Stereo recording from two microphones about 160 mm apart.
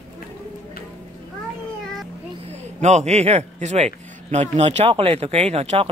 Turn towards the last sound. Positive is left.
turn(degrees=-40)  # may be behind; listen again after turning